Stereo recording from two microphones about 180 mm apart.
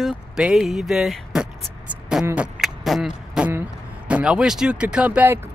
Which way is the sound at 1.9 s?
5° right (ahead or behind).